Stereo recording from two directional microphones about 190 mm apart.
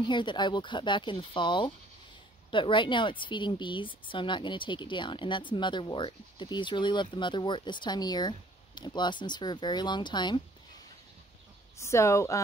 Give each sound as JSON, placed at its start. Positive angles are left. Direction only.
{"t": 0.0, "sound": "speech", "side_deg": 25}
{"t": 11.8, "sound": "speech", "side_deg": 15}